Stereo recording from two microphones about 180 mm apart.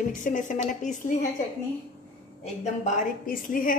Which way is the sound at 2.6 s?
40° left (ahead or behind).